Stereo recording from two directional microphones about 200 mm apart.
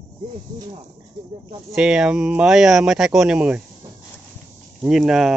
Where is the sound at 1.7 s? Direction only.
5° right (ahead or behind).